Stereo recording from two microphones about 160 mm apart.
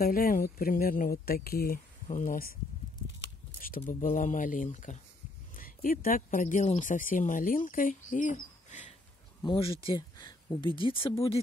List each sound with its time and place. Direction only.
0.0 s speech: 65° left (ahead or behind)
3.5 s speech: 60° left (ahead or behind)
5.6 s speech: 60° left (ahead or behind)
9.4 s speech: 30° left (ahead or behind)